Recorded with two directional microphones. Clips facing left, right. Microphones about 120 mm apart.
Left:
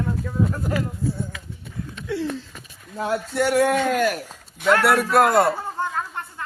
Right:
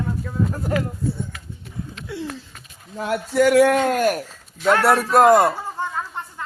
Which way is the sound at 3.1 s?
85° right.